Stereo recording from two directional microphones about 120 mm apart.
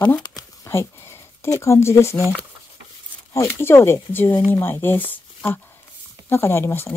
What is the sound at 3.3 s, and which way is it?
Speech, 20° left (ahead or behind).